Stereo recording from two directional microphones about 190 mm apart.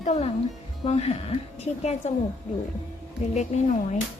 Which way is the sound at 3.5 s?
35° left (ahead or behind).